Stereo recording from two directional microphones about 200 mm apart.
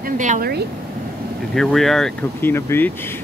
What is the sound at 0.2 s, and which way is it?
Speech, 40° right (ahead or behind).